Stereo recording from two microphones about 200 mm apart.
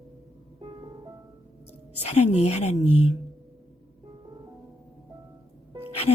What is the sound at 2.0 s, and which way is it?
Speech, 35° left (ahead or behind).